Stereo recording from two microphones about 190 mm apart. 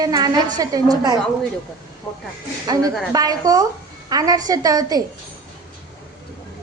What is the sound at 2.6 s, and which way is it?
A woman's voice, 20° right (ahead or behind).